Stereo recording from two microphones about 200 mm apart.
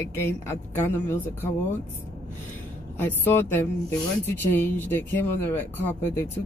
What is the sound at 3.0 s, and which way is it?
Speech, 10° left (ahead or behind).